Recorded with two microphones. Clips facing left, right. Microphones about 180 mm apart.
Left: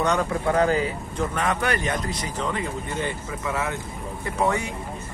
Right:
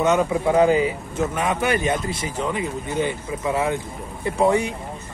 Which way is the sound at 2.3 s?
10° right (ahead or behind).